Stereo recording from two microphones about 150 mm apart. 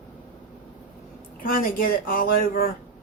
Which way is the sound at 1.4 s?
75° left (ahead or behind).